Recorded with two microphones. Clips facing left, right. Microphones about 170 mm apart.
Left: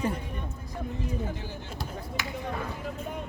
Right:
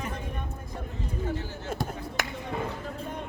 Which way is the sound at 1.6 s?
50° right (ahead or behind).